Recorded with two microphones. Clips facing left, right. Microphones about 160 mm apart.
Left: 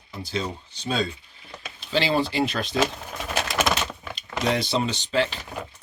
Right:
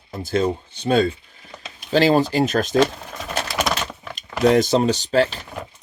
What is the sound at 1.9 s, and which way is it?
Speech, 45° right (ahead or behind).